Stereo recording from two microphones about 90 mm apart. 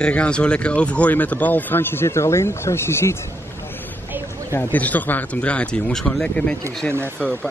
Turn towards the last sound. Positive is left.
turn(degrees=15)  # may be behind; listen again after turning